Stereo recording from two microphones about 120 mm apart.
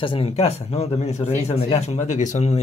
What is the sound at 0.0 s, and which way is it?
Speech, 50° left (ahead or behind).